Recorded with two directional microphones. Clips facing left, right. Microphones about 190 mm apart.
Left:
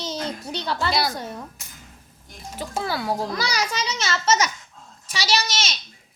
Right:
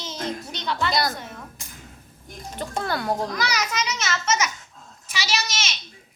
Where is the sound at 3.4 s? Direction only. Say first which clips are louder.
Even; 30° left (ahead or behind).